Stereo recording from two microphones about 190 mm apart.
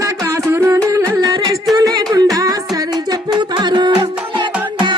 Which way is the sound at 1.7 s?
20° right (ahead or behind).